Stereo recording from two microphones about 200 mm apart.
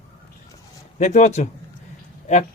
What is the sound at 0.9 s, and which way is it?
Speech, 35° left (ahead or behind).